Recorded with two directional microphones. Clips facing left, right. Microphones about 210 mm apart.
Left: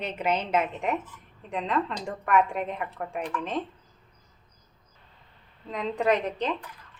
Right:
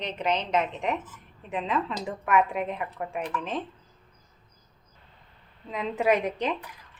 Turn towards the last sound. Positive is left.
turn(degrees=-10)  # may be behind; listen again after turning